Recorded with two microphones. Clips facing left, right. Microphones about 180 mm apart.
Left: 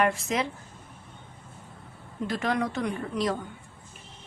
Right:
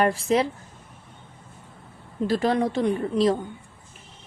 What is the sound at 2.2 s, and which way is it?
A woman's voice, 30° right (ahead or behind).